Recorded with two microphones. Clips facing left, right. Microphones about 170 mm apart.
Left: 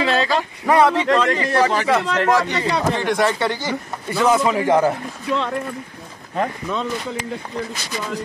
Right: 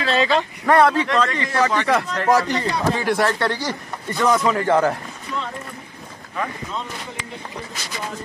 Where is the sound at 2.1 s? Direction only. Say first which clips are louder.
Left 5 dB; 75° left (ahead or behind).